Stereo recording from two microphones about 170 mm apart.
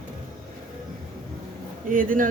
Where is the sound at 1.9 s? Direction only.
55° right (ahead or behind).